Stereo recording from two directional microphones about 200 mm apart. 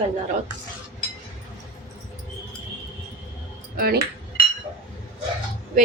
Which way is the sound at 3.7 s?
50° right (ahead or behind).